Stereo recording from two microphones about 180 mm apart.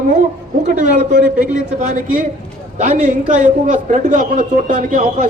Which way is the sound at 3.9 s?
45° right (ahead or behind).